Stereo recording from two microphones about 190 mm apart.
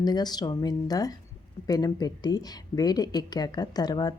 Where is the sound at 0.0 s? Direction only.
20° left (ahead or behind).